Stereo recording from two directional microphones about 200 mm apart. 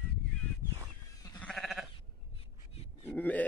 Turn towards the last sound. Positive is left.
turn(degrees=10)  # may be behind; listen again after turning